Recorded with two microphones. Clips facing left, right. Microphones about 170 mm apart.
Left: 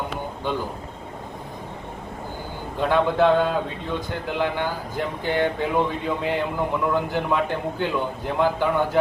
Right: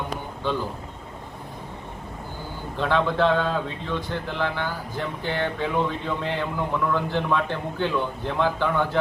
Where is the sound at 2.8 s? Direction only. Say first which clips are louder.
Left 3 dB; 15° left (ahead or behind).